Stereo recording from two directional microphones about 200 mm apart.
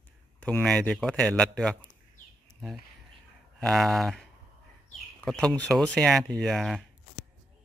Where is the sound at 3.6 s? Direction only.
Centre (ahead or behind).